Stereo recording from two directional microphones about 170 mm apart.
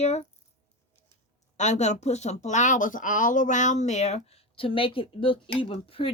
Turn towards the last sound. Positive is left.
turn(degrees=35)  # may be behind; listen again after turning